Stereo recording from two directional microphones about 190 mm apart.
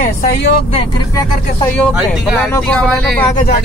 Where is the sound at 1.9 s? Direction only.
Centre (ahead or behind).